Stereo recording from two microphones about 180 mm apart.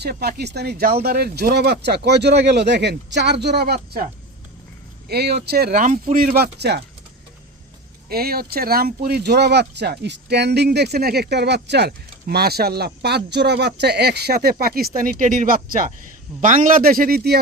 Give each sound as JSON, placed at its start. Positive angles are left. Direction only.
{"t": 0.0, "sound": "speech", "side_deg": -65}
{"t": 5.0, "sound": "speech", "side_deg": -65}
{"t": 8.1, "sound": "a man's voice", "side_deg": -55}